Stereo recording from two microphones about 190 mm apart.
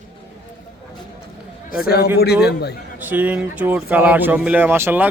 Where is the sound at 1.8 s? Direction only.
55° left (ahead or behind).